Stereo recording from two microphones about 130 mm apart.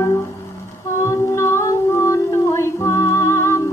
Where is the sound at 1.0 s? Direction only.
20° left (ahead or behind).